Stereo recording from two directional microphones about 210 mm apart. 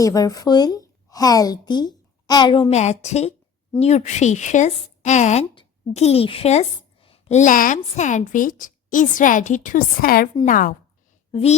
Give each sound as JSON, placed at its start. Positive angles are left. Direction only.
{"t": 0.0, "sound": "a woman's voice", "side_deg": 15}
{"t": 11.3, "sound": "speech", "side_deg": 25}